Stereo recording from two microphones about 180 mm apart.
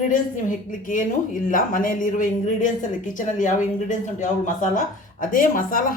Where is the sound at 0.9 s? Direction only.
45° left (ahead or behind).